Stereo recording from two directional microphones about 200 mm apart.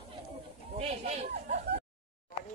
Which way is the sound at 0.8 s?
35° right (ahead or behind).